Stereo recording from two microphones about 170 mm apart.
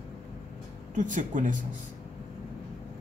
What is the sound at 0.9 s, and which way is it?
Speech, 50° right (ahead or behind).